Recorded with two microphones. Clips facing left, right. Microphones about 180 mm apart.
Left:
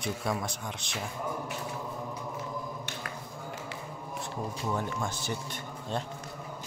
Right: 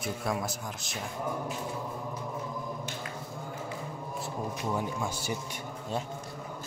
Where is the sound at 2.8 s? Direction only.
75° left (ahead or behind).